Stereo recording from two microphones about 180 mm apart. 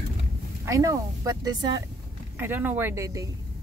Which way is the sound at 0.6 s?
20° right (ahead or behind).